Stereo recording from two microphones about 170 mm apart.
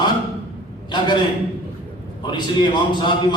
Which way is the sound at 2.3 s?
25° left (ahead or behind).